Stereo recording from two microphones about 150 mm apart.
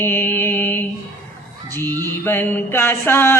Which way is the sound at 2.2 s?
15° left (ahead or behind).